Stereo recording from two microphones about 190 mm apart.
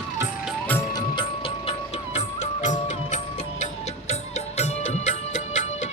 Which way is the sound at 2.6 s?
40° left (ahead or behind).